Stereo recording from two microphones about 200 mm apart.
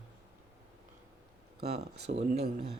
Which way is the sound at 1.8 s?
55° right (ahead or behind).